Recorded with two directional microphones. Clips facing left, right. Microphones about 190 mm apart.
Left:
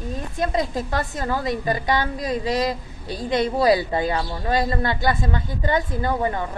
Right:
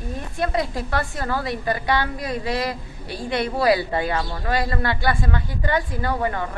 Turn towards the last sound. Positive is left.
turn(degrees=15)  # may be behind; listen again after turning